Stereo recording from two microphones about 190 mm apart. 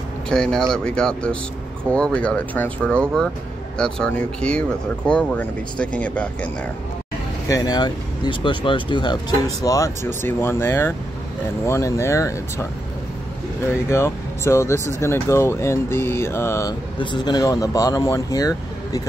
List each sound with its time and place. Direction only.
0.3 s speech: 5° left (ahead or behind)
7.4 s speech: 20° left (ahead or behind)
13.8 s speech: 15° left (ahead or behind)